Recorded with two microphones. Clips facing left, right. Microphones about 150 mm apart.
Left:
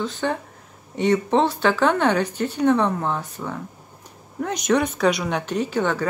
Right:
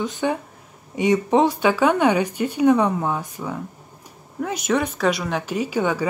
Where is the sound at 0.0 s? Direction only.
15° right (ahead or behind).